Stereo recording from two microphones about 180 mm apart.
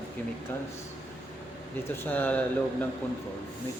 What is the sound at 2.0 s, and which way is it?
Speech, 10° left (ahead or behind).